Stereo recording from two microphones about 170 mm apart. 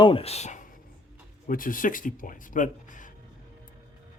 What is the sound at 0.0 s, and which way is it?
Speech, 35° left (ahead or behind).